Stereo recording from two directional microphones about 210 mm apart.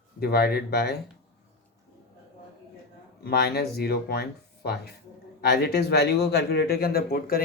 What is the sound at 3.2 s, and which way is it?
Speech, 50° left (ahead or behind).